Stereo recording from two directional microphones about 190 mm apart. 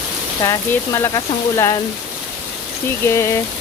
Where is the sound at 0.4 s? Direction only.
15° left (ahead or behind).